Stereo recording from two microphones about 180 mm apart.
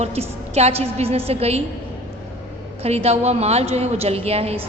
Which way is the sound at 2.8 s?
35° right (ahead or behind).